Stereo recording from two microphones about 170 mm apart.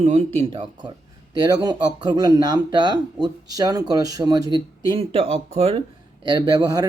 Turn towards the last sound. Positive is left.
turn(degrees=-20)  # may be behind; listen again after turning